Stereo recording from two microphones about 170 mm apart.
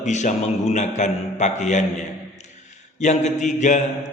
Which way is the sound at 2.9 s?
45° left (ahead or behind).